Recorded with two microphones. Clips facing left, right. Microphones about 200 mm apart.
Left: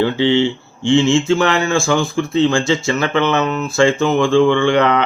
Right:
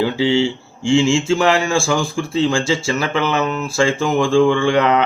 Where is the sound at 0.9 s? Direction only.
10° right (ahead or behind).